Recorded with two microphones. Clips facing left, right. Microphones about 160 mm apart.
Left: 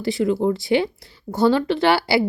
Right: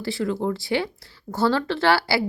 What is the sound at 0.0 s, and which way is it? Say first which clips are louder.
Speech: left 5 dB; 20° left (ahead or behind).